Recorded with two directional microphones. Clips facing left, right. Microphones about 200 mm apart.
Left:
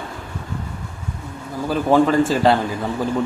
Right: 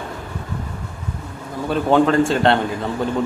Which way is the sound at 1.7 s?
Centre (ahead or behind).